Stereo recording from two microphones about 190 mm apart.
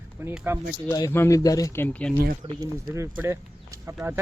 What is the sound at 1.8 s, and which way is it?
Speech, 10° left (ahead or behind).